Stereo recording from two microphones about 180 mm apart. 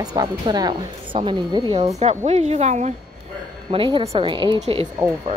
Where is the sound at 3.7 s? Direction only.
30° right (ahead or behind).